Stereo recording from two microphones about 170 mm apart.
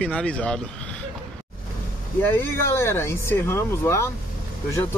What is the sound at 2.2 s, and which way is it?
Speech, 15° left (ahead or behind).